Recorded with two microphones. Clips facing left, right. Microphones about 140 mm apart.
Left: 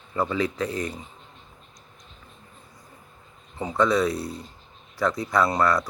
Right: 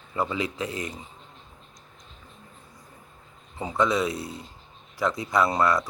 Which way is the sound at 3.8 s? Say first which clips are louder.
Left 3 dB; 20° right (ahead or behind).